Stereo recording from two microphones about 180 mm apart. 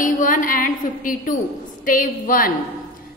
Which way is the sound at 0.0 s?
50° left (ahead or behind).